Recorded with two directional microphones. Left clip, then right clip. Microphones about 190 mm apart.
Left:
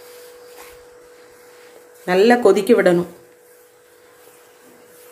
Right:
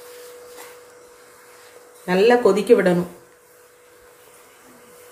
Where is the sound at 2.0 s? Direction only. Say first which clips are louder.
Left 2 dB; 55° left (ahead or behind).